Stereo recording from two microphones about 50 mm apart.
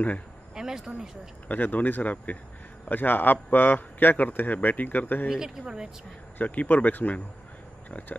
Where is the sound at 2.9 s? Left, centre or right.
Left.